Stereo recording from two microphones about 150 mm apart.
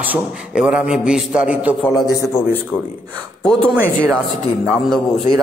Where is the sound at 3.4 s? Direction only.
5° left (ahead or behind).